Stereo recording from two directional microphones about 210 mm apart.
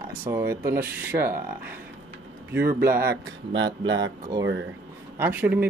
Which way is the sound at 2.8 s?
10° right (ahead or behind).